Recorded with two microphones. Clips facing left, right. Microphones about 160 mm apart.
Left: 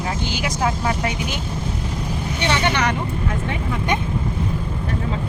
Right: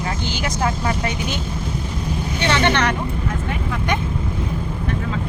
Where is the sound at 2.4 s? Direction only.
15° left (ahead or behind).